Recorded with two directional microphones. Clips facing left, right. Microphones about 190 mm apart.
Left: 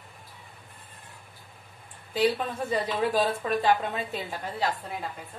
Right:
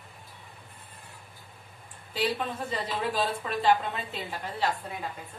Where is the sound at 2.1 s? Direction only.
45° left (ahead or behind).